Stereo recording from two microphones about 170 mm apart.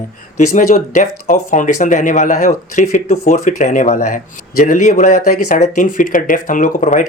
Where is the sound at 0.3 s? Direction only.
45° left (ahead or behind).